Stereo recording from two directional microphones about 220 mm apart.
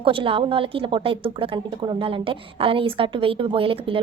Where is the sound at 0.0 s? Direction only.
25° right (ahead or behind).